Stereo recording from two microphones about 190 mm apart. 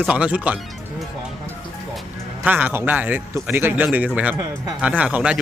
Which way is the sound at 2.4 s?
10° right (ahead or behind).